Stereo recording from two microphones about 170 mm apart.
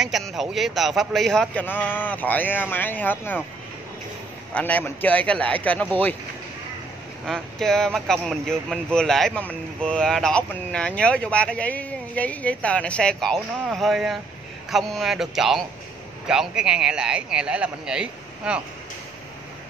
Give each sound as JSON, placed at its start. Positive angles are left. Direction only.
{"t": 0.0, "sound": "speech", "side_deg": 0}
{"t": 4.6, "sound": "speech", "side_deg": 10}
{"t": 7.2, "sound": "speech", "side_deg": 5}